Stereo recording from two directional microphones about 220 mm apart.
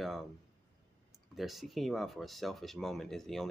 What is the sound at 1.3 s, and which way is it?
Speech, centre (ahead or behind).